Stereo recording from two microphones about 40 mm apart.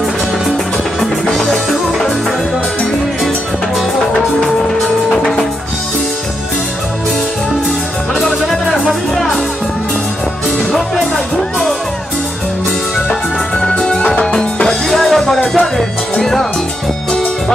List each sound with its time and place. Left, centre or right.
1.2 s music: centre
4.4 s music: centre
9.1 s music: centre
10.7 s music: centre
13.7 s music: left